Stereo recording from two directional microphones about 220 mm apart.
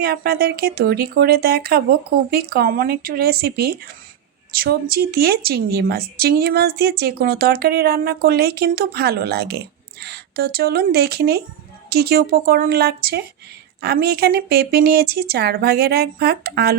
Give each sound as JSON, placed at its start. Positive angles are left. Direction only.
{"t": 0.0, "sound": "speech", "side_deg": -45}